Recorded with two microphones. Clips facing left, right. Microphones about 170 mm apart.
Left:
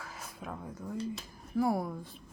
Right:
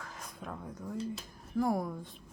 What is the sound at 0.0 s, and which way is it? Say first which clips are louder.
Speech: left 1 dB; 5° left (ahead or behind).